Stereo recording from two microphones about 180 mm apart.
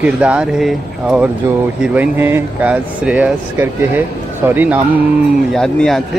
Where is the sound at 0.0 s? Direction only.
5° right (ahead or behind).